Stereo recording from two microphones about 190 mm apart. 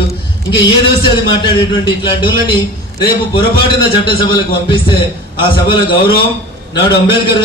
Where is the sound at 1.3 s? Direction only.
25° left (ahead or behind).